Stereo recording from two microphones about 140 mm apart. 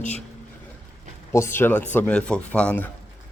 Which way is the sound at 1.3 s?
20° left (ahead or behind).